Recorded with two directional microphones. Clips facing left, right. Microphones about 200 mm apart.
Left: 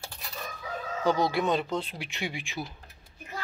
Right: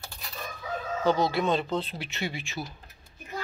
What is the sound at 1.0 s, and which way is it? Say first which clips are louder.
Speech: right 1 dB; 15° left (ahead or behind).